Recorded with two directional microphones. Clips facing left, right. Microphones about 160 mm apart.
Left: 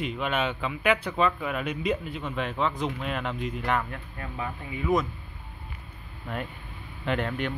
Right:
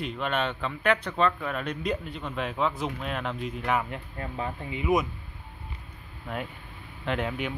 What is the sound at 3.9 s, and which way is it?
Speech, 25° right (ahead or behind).